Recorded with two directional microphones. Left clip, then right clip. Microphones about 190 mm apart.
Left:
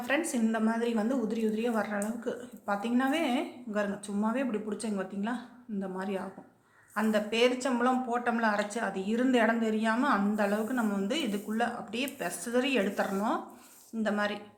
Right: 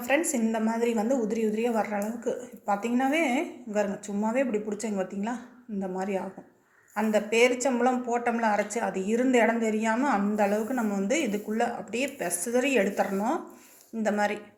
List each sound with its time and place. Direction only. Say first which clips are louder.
0.0 s a woman's voice: right 4 dB; 20° right (ahead or behind)